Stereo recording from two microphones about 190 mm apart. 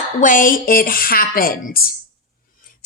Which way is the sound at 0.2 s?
45° left (ahead or behind).